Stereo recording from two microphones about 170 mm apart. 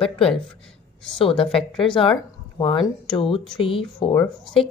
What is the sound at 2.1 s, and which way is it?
Speech, 30° left (ahead or behind).